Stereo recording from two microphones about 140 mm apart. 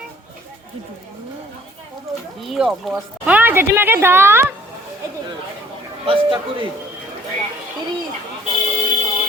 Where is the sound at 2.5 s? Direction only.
Centre (ahead or behind); by 4.4 s 15° right (ahead or behind).